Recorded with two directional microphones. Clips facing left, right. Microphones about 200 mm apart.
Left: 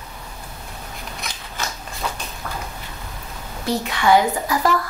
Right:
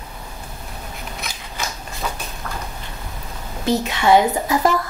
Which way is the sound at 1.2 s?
Centre (ahead or behind).